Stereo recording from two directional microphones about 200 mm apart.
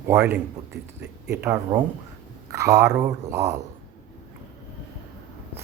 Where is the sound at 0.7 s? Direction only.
60° right (ahead or behind).